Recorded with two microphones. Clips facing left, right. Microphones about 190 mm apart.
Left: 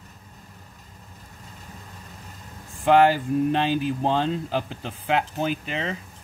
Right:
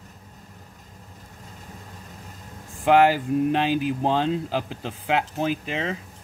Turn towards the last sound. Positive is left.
turn(degrees=-5)  # may be behind; listen again after turning